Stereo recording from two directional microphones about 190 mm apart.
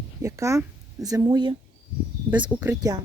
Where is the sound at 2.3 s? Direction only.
5° right (ahead or behind).